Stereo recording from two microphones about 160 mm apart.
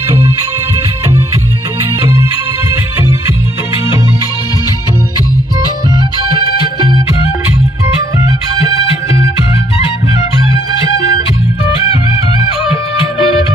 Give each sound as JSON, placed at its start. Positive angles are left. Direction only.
{"t": 3.0, "sound": "music", "side_deg": -15}
{"t": 5.9, "sound": "music", "side_deg": -25}
{"t": 13.0, "sound": "music", "side_deg": 35}